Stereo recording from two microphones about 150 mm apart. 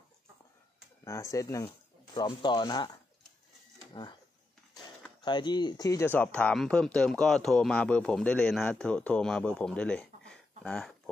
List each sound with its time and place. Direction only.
1.0 s speech: 20° left (ahead or behind)
5.2 s speech: 30° left (ahead or behind); by 11.0 s 5° left (ahead or behind)